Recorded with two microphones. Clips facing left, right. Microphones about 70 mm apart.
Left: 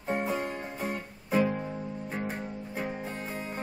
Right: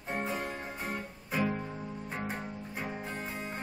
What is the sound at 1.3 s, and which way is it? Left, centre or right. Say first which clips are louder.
Music: left 5 dB; centre.